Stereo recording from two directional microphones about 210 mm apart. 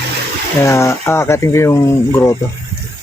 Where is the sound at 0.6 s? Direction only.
15° left (ahead or behind).